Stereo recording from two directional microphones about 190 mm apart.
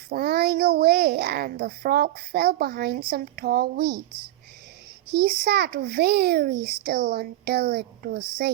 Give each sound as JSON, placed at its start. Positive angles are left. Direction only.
{"t": 0.1, "sound": "a child's voice", "side_deg": -55}
{"t": 5.1, "sound": "a child's voice", "side_deg": -55}